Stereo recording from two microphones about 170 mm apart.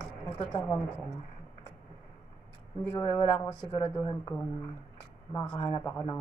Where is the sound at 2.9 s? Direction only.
20° left (ahead or behind).